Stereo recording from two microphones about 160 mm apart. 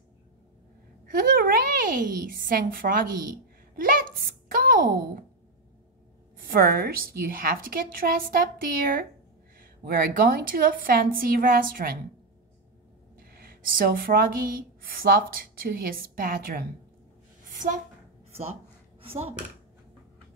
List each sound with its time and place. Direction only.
1.1 s a woman's voice: 60° right (ahead or behind)
3.7 s a sound: 60° right (ahead or behind)
6.3 s a woman's voice: 65° right (ahead or behind)
13.3 s a woman's voice: 65° right (ahead or behind)
19.0 s speech: 40° right (ahead or behind)